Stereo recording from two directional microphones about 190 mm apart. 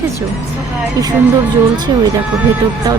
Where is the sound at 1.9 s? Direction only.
25° right (ahead or behind).